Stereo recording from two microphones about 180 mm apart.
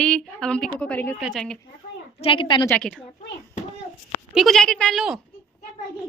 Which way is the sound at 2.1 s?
30° left (ahead or behind).